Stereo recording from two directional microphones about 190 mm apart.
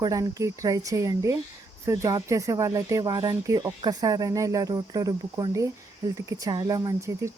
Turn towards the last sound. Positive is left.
turn(degrees=-15)  # may be behind; listen again after turning